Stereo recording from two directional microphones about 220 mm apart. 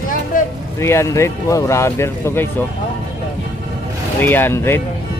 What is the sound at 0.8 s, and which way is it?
Speech, 10° left (ahead or behind).